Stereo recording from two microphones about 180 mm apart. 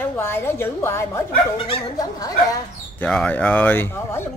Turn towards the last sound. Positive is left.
turn(degrees=15)  # may be behind; listen again after turning